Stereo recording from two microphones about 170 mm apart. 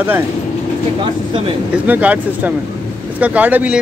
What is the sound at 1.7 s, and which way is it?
Speech, 10° right (ahead or behind).